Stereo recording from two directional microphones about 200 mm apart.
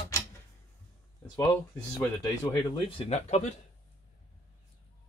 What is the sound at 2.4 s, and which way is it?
Speech, 25° left (ahead or behind).